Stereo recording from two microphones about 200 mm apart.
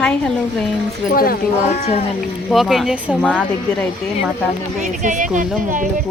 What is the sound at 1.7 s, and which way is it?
Speech, 30° left (ahead or behind).